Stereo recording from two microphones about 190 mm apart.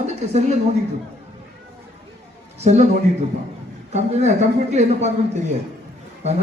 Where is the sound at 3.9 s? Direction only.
35° right (ahead or behind).